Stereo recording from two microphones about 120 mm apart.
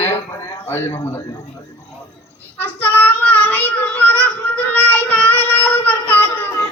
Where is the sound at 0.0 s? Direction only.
20° left (ahead or behind).